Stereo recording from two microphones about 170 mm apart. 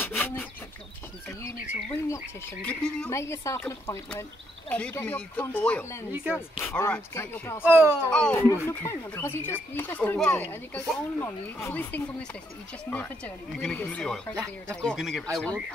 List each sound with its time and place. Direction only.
0.0 s rub: 15° left (ahead or behind)
2.6 s speech: 5° left (ahead or behind)
3.1 s speech: 15° left (ahead or behind)
7.6 s speech: 10° right (ahead or behind)
8.0 s speech: 5° left (ahead or behind)